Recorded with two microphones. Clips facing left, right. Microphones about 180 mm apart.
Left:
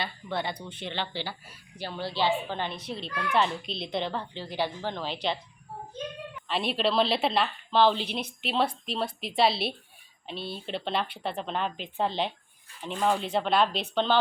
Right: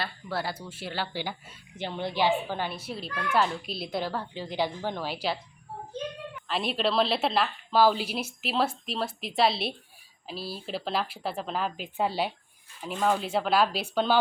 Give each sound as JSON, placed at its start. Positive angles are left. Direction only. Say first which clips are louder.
{"t": 0.0, "sound": "a woman's voice", "louder": "even", "side_deg": -5}
{"t": 6.5, "sound": "a woman's voice", "louder": "left 1 dB", "side_deg": 0}